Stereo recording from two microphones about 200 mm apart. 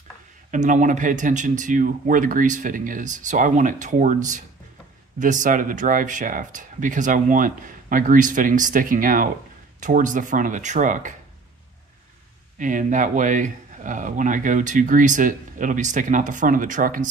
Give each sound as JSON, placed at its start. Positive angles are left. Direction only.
{"t": 0.5, "sound": "speech", "side_deg": -40}
{"t": 12.5, "sound": "speech", "side_deg": -40}